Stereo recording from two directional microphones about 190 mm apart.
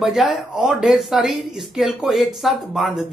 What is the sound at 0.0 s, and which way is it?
A woman's voice, centre (ahead or behind).